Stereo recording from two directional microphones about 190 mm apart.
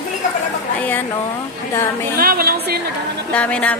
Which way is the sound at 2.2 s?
50° right (ahead or behind).